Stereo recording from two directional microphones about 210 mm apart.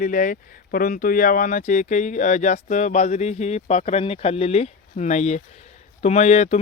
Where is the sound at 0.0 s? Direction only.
40° left (ahead or behind).